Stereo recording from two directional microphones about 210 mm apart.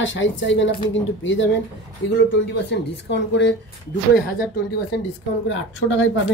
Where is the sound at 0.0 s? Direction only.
65° left (ahead or behind).